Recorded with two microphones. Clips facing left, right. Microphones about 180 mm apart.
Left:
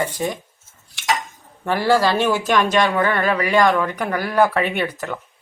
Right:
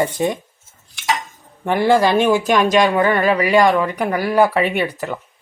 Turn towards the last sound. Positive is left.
turn(degrees=-10)  # may be behind; listen again after turning